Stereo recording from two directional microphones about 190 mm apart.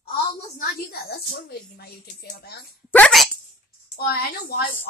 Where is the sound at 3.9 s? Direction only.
55° left (ahead or behind).